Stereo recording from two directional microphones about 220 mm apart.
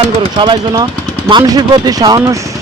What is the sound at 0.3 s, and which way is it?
Speech, 20° right (ahead or behind).